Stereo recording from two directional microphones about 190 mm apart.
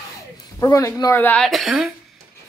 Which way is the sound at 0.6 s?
15° left (ahead or behind).